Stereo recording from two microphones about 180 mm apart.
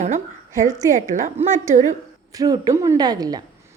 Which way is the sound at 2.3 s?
20° right (ahead or behind).